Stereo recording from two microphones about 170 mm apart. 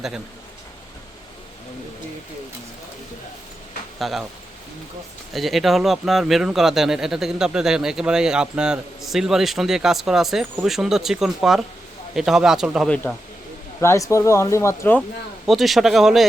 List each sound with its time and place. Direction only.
4.0 s speech: centre (ahead or behind)
5.3 s speech: centre (ahead or behind)
12.9 s speech: 5° left (ahead or behind)
13.8 s speech: 15° left (ahead or behind)
15.4 s speech: centre (ahead or behind)